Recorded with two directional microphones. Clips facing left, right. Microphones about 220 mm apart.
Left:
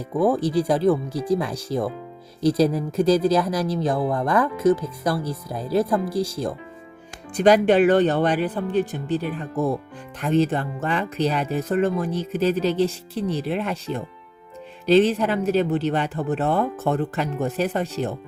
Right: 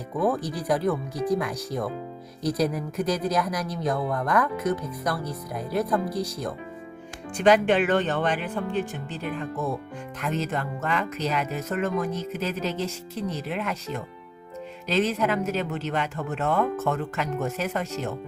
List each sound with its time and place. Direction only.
0.4 s speech: 30° left (ahead or behind)